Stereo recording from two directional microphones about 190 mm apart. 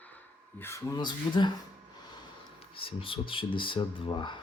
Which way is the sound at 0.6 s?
15° left (ahead or behind).